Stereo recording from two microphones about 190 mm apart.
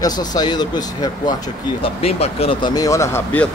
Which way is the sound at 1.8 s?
30° left (ahead or behind).